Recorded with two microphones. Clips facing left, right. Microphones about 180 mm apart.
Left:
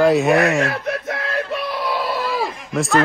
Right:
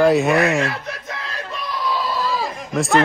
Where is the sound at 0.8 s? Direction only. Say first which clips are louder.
Left 7 dB; 60° left (ahead or behind).